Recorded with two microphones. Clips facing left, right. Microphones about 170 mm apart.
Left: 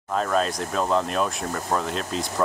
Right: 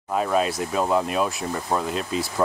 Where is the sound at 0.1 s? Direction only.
10° right (ahead or behind).